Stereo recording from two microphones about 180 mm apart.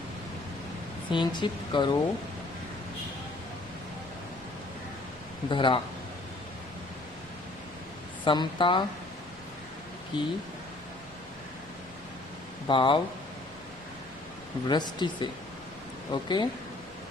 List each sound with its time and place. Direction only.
1.1 s speech: 25° left (ahead or behind)
5.5 s speech: 25° left (ahead or behind)
8.2 s speech: 25° left (ahead or behind)
10.1 s speech: 25° left (ahead or behind)
12.6 s speech: 25° left (ahead or behind)
14.7 s speech: 25° left (ahead or behind)